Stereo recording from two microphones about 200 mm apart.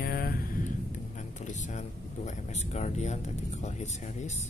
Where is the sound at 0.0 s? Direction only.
50° left (ahead or behind).